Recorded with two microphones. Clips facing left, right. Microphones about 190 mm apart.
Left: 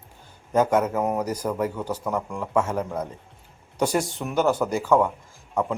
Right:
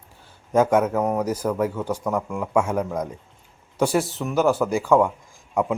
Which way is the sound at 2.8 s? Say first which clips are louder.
Right 2 dB; 5° left (ahead or behind).